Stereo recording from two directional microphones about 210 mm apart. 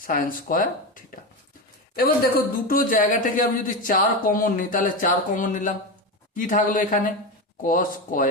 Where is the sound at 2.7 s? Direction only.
40° left (ahead or behind).